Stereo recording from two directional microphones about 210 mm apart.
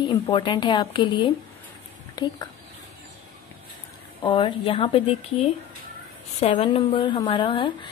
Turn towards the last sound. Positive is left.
turn(degrees=25)  # may be behind; listen again after turning